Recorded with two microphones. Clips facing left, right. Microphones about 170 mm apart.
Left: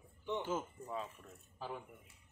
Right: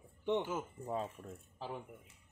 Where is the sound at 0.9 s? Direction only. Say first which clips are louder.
Right 5 dB; 45° right (ahead or behind).